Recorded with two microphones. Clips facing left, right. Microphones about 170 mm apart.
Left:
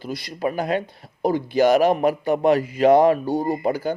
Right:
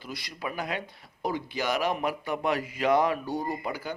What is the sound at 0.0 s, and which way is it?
Speech, 35° left (ahead or behind).